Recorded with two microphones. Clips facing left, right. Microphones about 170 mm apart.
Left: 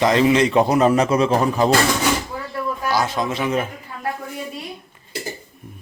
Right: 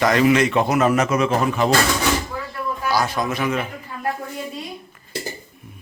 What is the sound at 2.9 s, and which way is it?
Speech, 20° left (ahead or behind).